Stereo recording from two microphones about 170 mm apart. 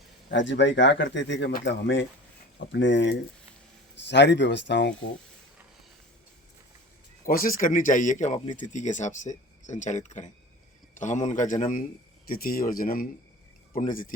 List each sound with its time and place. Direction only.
0.3 s speech: 90° left
7.3 s speech: 55° left (ahead or behind)